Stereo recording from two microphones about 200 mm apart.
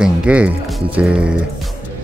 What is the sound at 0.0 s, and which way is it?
Music, 5° right (ahead or behind).